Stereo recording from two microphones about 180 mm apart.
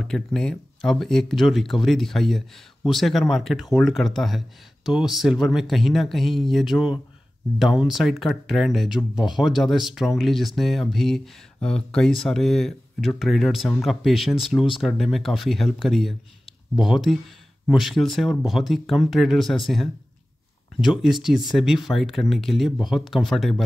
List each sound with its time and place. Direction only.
0.0 s speech: 5° left (ahead or behind)